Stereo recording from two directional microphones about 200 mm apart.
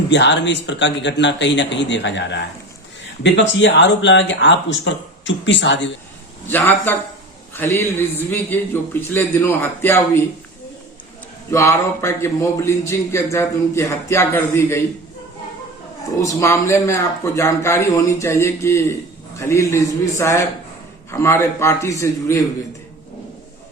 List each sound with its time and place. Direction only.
0.1 s speech: 60° left (ahead or behind)
6.5 s a man's voice: 10° left (ahead or behind)
11.5 s a man's voice: 15° left (ahead or behind)
16.2 s a man's voice: 15° left (ahead or behind)